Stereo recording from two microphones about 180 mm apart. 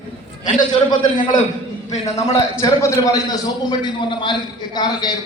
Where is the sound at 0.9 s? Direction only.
25° left (ahead or behind).